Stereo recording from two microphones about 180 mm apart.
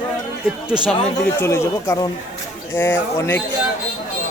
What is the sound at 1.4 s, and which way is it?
Speech, 15° left (ahead or behind).